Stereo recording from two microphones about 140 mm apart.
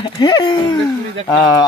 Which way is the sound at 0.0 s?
30° left (ahead or behind).